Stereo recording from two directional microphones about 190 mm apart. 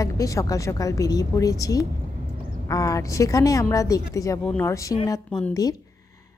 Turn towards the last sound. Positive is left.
turn(degrees=20)  # may be behind; listen again after turning